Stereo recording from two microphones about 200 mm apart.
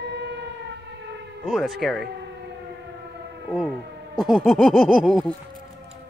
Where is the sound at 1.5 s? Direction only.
Centre (ahead or behind).